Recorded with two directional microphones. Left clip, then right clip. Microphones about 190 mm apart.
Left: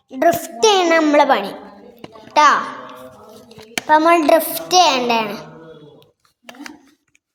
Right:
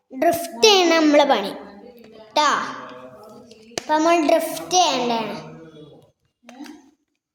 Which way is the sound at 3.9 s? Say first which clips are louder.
Left 5 dB; 15° left (ahead or behind).